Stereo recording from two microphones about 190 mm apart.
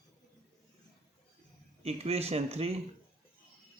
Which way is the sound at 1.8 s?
30° right (ahead or behind).